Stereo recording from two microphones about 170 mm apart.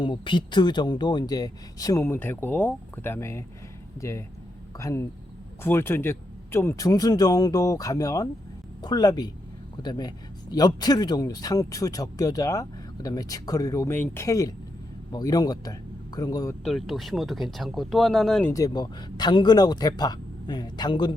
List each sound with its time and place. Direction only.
0.0 s speech: 30° left (ahead or behind)
16.6 s speech: centre (ahead or behind)
18.5 s speech: 25° left (ahead or behind)